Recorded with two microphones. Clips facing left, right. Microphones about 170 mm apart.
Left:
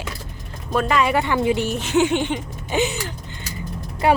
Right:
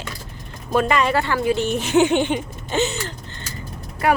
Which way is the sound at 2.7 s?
10° left (ahead or behind).